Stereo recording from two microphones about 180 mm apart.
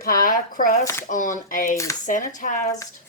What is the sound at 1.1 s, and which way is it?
Speech, 45° left (ahead or behind).